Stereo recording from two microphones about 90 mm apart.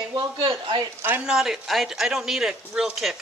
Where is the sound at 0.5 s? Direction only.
70° right (ahead or behind).